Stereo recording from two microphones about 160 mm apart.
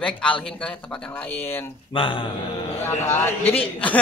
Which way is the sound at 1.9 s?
30° left (ahead or behind).